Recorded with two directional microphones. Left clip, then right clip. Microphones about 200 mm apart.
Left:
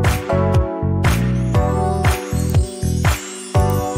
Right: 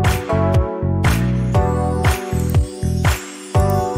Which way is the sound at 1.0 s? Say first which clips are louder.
Even; centre (ahead or behind).